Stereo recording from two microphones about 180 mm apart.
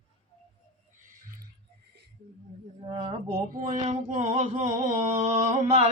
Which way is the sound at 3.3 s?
45° right (ahead or behind).